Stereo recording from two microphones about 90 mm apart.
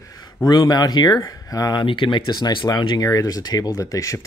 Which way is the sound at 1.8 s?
65° left (ahead or behind).